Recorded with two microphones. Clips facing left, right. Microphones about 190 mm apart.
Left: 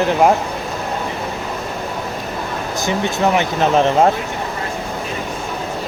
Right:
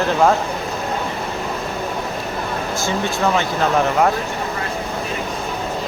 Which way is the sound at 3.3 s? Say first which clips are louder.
Left 3 dB; 20° left (ahead or behind).